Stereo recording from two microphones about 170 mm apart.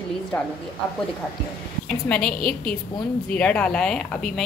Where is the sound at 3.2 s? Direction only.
5° left (ahead or behind).